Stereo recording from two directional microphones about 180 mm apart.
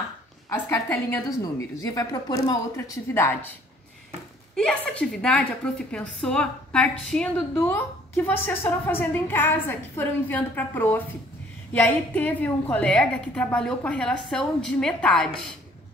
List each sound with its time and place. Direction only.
0.5 s a woman's voice: 15° left (ahead or behind)
4.6 s a woman's voice: 5° left (ahead or behind)